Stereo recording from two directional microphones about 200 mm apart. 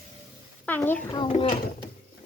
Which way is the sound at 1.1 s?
25° left (ahead or behind).